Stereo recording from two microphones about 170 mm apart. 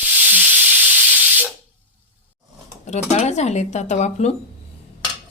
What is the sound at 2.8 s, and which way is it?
Speech, 40° left (ahead or behind).